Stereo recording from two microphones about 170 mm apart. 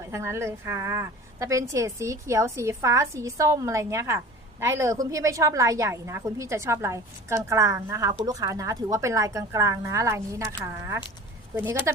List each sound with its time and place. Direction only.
0.1 s a woman's voice: 15° right (ahead or behind)